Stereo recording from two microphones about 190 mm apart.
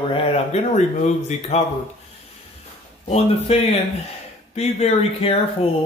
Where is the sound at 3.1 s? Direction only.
35° left (ahead or behind).